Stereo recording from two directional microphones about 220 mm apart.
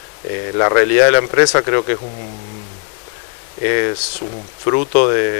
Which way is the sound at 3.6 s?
20° left (ahead or behind).